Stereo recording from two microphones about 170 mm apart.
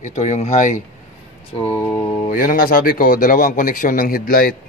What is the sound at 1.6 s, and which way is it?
Mantra, 15° left (ahead or behind).